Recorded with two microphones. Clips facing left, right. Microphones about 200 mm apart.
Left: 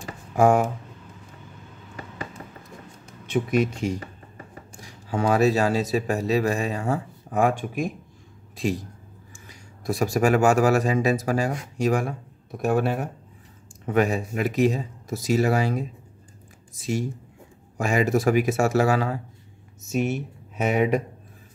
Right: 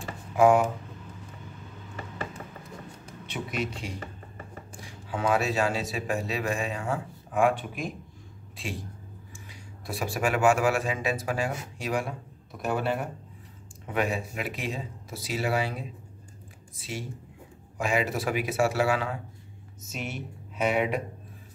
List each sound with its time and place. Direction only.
0.4 s speech: 45° left (ahead or behind)
3.3 s speech: 50° left (ahead or behind)
13.9 s speech: 45° left (ahead or behind)